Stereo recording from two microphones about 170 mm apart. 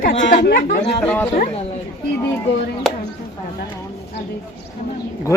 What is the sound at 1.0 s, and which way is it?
Speech, 5° left (ahead or behind).